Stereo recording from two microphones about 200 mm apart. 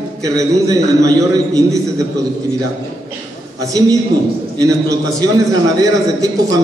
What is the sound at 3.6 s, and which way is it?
A man's voice, 15° right (ahead or behind).